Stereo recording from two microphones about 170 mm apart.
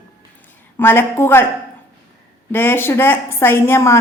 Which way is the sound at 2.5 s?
10° left (ahead or behind).